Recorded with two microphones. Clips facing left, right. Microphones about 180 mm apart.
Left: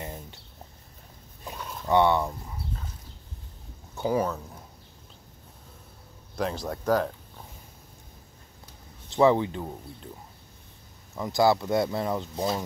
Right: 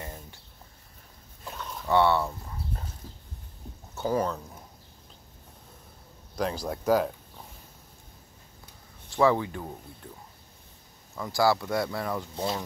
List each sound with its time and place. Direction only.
0.0 s a sound: 20° left (ahead or behind)
1.4 s a sound: 15° left (ahead or behind)
1.9 s speech: 15° left (ahead or behind)
3.9 s speech: 10° left (ahead or behind)
6.3 s speech: centre (ahead or behind)
9.1 s speech: 20° left (ahead or behind)
11.1 s speech: 20° left (ahead or behind)